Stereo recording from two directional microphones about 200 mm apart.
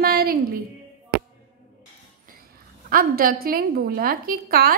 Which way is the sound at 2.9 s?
45° right (ahead or behind).